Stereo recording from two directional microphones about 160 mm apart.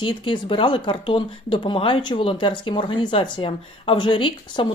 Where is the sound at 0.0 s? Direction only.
30° left (ahead or behind).